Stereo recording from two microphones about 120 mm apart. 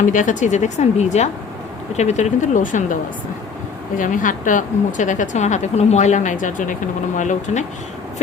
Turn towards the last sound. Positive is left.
turn(degrees=80)